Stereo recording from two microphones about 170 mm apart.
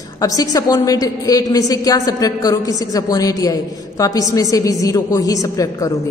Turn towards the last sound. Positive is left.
turn(degrees=20)  # may be behind; listen again after turning